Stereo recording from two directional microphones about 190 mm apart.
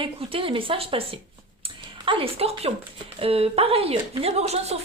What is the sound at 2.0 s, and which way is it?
A woman's voice, 30° right (ahead or behind).